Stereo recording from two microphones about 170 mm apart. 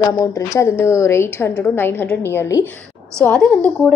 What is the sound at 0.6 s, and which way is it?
Speech, 15° left (ahead or behind).